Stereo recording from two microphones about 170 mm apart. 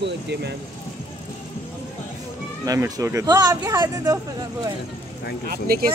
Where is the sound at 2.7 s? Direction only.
20° right (ahead or behind).